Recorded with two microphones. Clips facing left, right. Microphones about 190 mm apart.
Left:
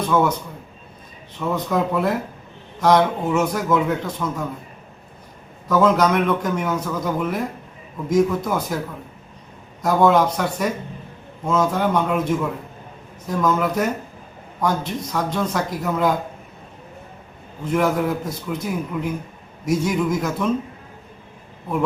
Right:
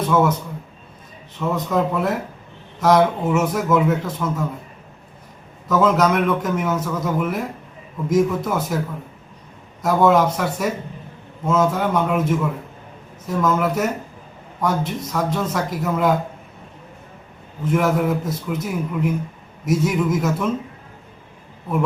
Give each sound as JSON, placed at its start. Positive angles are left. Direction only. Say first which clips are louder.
{"t": 0.1, "sound": "a man's voice", "louder": "right 1 dB", "side_deg": -5}
{"t": 1.5, "sound": "a man's voice", "louder": "even", "side_deg": 0}
{"t": 5.6, "sound": "a man's voice", "louder": "even", "side_deg": 0}
{"t": 9.8, "sound": "a man's voice", "louder": "even", "side_deg": -5}
{"t": 17.7, "sound": "a man's voice", "louder": "right 1 dB", "side_deg": 0}